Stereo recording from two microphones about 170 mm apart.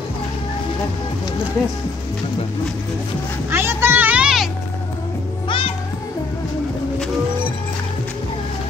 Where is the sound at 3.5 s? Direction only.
15° right (ahead or behind).